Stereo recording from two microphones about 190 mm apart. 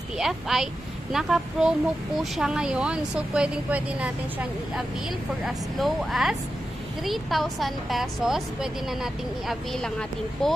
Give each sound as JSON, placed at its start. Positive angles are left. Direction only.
{"t": 0.2, "sound": "speech", "side_deg": 0}